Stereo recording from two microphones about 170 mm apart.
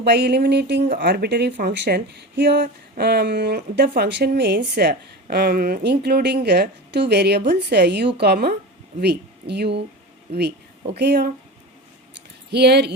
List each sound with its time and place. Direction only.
0.0 s speech: 80° right
2.9 s a woman's voice: 70° right (ahead or behind)
4.4 s a woman's voice: 90° right
12.5 s a woman's voice: 75° right (ahead or behind)